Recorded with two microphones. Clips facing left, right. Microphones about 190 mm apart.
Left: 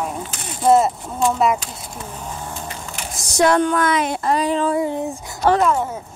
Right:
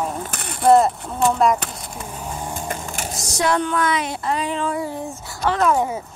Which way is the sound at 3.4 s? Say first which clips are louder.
Left 4 dB; 50° left (ahead or behind).